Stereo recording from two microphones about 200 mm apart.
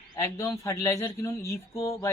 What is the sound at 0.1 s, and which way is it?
Speech, 15° left (ahead or behind).